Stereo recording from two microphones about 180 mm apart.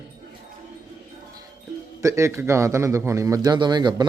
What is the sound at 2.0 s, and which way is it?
A man's voice, 15° right (ahead or behind).